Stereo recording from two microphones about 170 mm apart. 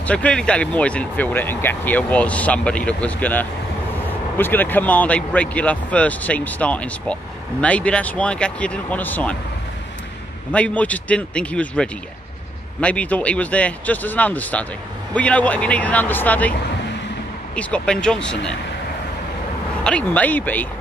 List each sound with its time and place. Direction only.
0.0 s speech: 5° left (ahead or behind)
10.5 s speech: 10° left (ahead or behind)
17.6 s speech: 5° left (ahead or behind)
19.8 s speech: 5° left (ahead or behind)